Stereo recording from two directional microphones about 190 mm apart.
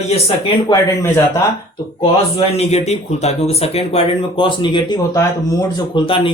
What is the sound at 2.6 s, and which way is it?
Speech, 35° left (ahead or behind).